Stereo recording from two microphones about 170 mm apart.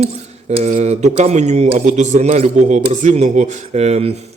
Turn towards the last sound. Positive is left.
turn(degrees=-40)  # may be behind; listen again after turning